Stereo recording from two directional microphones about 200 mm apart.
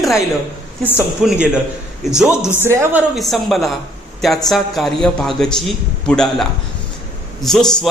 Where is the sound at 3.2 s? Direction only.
Centre (ahead or behind).